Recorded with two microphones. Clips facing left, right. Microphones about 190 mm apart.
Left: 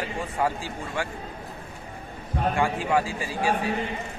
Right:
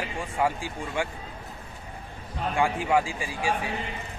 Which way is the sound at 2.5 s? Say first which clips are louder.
Right 2 dB; 15° right (ahead or behind).